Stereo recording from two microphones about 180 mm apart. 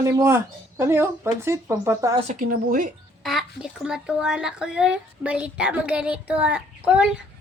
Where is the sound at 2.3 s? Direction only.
50° right (ahead or behind).